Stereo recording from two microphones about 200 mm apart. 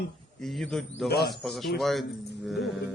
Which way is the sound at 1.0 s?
55° left (ahead or behind).